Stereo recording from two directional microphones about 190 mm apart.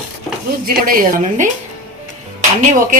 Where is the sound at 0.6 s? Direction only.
50° right (ahead or behind).